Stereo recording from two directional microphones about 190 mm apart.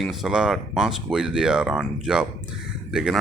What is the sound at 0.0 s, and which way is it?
Speech, centre (ahead or behind).